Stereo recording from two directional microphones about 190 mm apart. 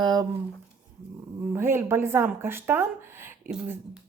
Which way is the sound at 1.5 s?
15° right (ahead or behind).